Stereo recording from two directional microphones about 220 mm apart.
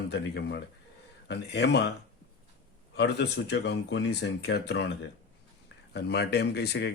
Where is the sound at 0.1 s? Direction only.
50° left (ahead or behind).